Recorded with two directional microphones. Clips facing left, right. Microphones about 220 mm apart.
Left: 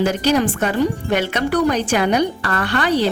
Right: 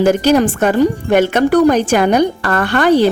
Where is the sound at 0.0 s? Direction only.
50° right (ahead or behind).